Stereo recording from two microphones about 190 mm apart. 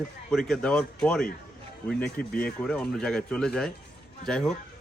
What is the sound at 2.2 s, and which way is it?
Speech, 50° left (ahead or behind).